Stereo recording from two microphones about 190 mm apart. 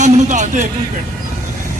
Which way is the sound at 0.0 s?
40° right (ahead or behind).